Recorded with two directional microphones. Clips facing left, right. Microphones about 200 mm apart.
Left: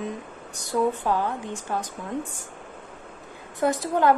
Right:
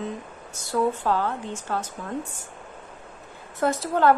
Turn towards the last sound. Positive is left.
turn(degrees=15)  # may be behind; listen again after turning